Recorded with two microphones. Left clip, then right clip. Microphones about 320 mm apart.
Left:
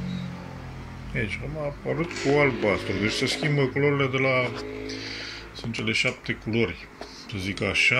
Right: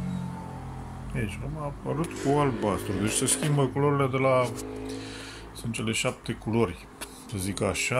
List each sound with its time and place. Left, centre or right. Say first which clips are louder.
1.1 s speech: left 6 dB; centre
5.7 s speech: left 4 dB; centre